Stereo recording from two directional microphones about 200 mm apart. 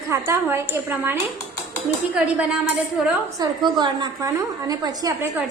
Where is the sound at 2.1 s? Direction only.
5° right (ahead or behind).